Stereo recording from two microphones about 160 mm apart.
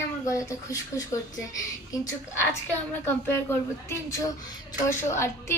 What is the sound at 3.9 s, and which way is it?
A woman's voice, 20° left (ahead or behind).